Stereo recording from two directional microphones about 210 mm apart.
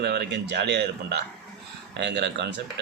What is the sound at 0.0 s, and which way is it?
Speech, 50° right (ahead or behind).